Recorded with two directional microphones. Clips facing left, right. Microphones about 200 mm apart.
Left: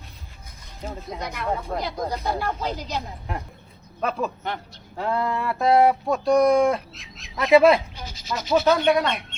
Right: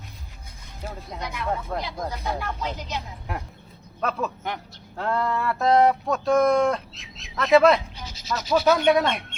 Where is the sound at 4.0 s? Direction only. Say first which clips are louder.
Left 1 dB; 5° left (ahead or behind).